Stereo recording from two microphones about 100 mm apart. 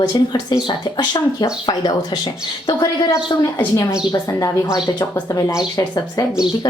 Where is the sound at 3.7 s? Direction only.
30° left (ahead or behind).